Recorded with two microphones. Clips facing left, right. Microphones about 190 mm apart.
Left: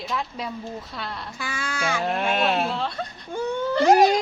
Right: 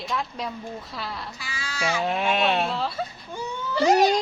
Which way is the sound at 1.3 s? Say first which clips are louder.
Left 5 dB; 50° left (ahead or behind).